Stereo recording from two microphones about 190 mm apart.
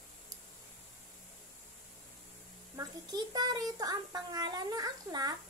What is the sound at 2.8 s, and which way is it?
A child's voice, 20° right (ahead or behind).